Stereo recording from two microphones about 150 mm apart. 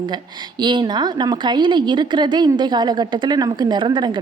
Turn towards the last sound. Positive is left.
turn(degrees=-30)  # may be behind; listen again after turning